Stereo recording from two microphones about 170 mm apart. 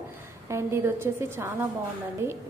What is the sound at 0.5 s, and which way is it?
A woman's voice, 15° right (ahead or behind).